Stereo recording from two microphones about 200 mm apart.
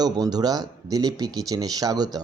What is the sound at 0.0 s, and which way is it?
Speech, 20° right (ahead or behind).